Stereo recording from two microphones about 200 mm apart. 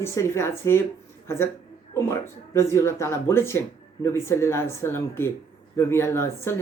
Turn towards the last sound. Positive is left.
turn(degrees=10)  # may be behind; listen again after turning